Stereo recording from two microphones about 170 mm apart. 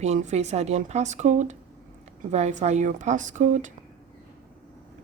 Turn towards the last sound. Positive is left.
turn(degrees=-45)  # may be behind; listen again after turning